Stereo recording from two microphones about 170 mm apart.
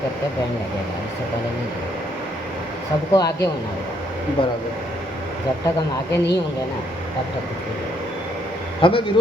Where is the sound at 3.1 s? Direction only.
20° left (ahead or behind).